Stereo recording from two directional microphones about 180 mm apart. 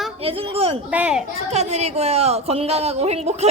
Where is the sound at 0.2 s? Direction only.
30° right (ahead or behind).